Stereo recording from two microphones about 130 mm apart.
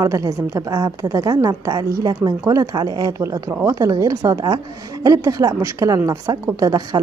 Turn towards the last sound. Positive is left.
turn(degrees=-30)  # may be behind; listen again after turning